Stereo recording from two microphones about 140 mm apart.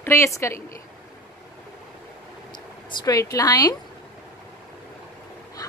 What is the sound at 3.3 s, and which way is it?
Speech, 25° left (ahead or behind).